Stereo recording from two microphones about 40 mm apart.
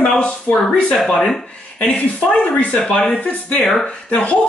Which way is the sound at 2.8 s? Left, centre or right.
Centre.